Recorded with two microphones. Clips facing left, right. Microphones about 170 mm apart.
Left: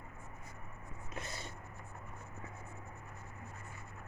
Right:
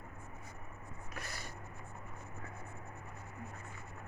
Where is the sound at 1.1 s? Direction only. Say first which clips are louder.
Left 2 dB; 25° left (ahead or behind).